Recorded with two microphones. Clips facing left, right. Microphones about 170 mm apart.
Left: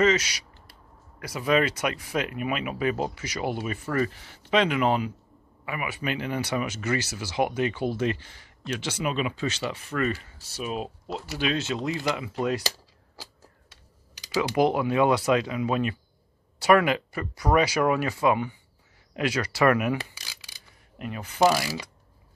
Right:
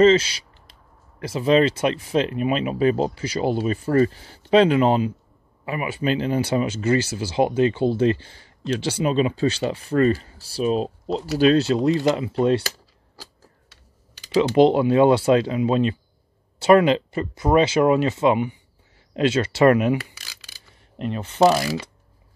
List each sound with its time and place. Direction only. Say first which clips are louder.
0.0 s speech: right 8 dB; 30° right (ahead or behind)
14.5 s speech: right 7 dB; 25° right (ahead or behind)
20.2 s filing: right 1 dB; 15° left (ahead or behind)
21.0 s speech: right 5 dB; 25° right (ahead or behind)